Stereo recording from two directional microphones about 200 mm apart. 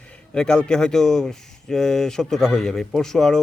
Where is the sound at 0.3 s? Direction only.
5° left (ahead or behind).